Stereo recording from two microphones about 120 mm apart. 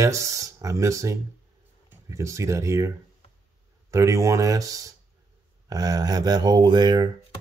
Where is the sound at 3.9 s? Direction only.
25° right (ahead or behind).